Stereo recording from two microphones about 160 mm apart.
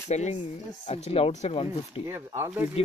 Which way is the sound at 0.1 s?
45° left (ahead or behind).